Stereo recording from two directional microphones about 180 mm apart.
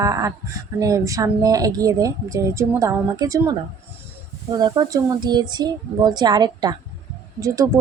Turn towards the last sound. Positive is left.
turn(degrees=-20)  # may be behind; listen again after turning